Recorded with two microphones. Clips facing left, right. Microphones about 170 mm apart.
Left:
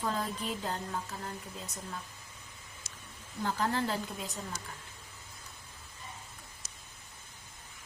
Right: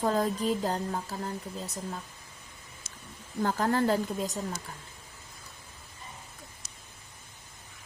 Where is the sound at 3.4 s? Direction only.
45° right (ahead or behind).